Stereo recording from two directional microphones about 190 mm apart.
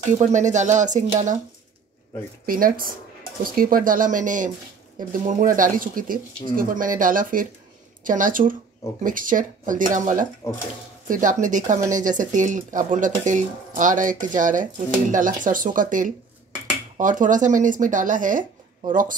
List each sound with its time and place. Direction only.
0.1 s speech: 40° right (ahead or behind)
2.4 s speech: 50° right (ahead or behind)
10.4 s speech: 15° left (ahead or behind)
11.1 s speech: 45° right (ahead or behind)